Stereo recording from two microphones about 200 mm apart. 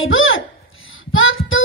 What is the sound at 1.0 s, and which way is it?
Child singing, 80° left.